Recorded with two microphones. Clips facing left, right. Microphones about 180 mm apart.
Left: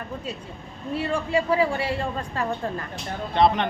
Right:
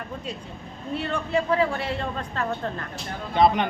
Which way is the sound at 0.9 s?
5° left (ahead or behind).